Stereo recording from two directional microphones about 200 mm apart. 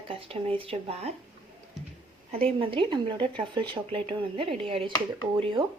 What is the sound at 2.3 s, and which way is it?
Speech, 30° right (ahead or behind).